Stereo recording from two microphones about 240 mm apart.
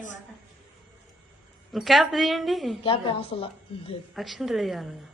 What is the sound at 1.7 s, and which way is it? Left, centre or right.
A woman's voice, centre.